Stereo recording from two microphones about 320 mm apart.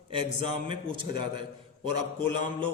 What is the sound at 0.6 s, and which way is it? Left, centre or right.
Speech, centre.